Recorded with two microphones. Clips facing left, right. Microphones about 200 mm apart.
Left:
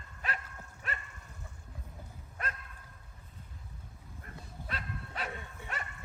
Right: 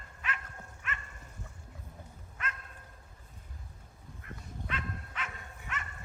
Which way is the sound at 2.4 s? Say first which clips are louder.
Left 1 dB; 35° left (ahead or behind).